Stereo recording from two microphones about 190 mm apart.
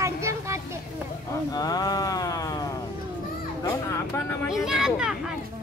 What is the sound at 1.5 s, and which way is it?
Mantra, 20° left (ahead or behind).